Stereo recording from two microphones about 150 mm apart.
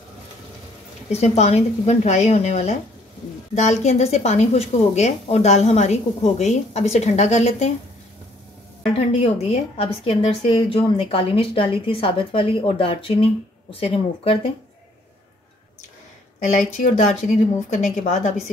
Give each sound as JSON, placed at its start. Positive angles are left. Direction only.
{"t": 1.1, "sound": "a woman's voice", "side_deg": 45}
{"t": 9.1, "sound": "a woman's voice", "side_deg": 40}
{"t": 16.3, "sound": "a woman's voice", "side_deg": 55}